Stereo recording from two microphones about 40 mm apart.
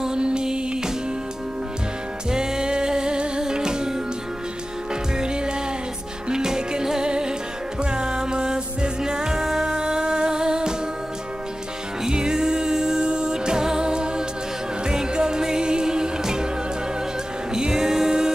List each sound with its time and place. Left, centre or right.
0.0 s music: centre
2.3 s music: centre
5.2 s music: right
12.0 s music: centre
17.6 s music: centre